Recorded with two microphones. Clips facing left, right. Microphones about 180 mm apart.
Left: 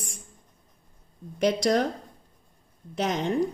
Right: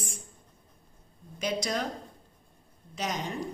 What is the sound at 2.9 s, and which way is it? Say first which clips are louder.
Speech: left 6 dB; 55° left (ahead or behind).